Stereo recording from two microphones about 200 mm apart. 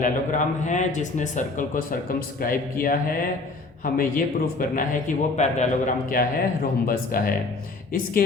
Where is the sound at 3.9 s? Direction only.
45° left (ahead or behind).